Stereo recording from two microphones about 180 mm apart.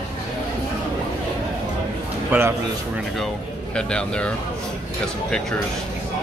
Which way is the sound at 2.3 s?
10° right (ahead or behind).